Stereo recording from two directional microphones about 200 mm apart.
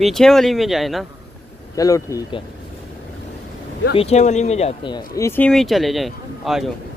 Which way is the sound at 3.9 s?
35° left (ahead or behind).